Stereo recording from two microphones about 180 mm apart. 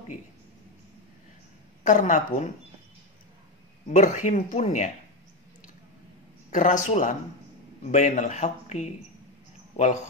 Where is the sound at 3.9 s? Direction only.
45° left (ahead or behind).